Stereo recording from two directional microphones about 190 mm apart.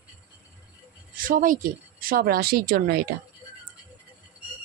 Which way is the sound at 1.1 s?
45° right (ahead or behind).